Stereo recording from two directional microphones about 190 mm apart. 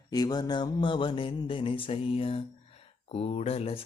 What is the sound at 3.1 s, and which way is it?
Speech, 35° left (ahead or behind).